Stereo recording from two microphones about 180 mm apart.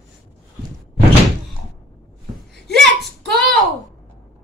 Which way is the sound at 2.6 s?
Centre (ahead or behind).